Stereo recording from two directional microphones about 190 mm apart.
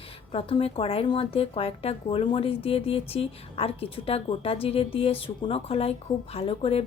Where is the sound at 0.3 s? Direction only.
30° left (ahead or behind).